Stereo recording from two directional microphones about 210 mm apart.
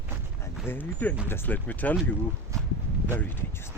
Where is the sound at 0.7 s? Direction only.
10° left (ahead or behind).